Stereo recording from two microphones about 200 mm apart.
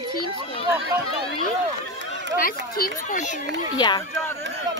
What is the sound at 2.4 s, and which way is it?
Speech, 45° left (ahead or behind).